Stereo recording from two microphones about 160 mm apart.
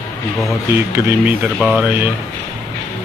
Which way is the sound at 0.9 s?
15° right (ahead or behind).